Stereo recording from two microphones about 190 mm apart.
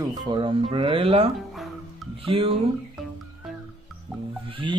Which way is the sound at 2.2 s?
30° right (ahead or behind).